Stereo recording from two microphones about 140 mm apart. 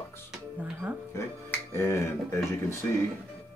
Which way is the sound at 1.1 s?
20° left (ahead or behind).